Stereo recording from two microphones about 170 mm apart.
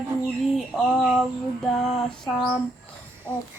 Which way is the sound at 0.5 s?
Centre (ahead or behind).